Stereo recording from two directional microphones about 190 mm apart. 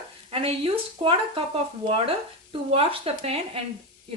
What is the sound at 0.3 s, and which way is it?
A woman's voice, 30° right (ahead or behind).